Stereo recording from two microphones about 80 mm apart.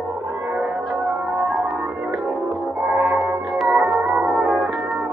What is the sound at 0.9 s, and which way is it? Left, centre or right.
Music, centre.